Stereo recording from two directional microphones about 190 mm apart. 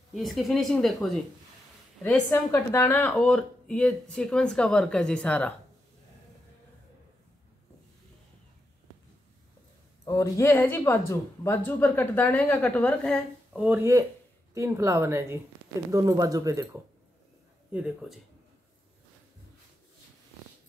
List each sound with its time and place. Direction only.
0.1 s speech: centre (ahead or behind)
10.0 s speech: 15° left (ahead or behind)
13.6 s a woman's voice: 10° right (ahead or behind)
17.7 s speech: 5° right (ahead or behind)